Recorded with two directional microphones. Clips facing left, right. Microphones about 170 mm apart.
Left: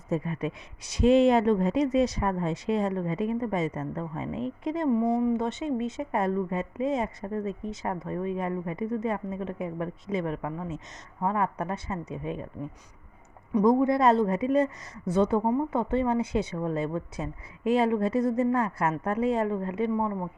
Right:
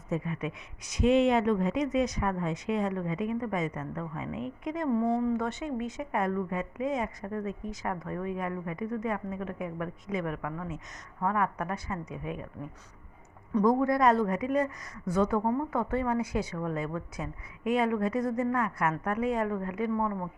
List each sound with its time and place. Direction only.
0.1 s speech: 35° left (ahead or behind)
4.9 s speech: 15° left (ahead or behind); by 12.5 s 30° left (ahead or behind)
13.5 s speech: 15° left (ahead or behind)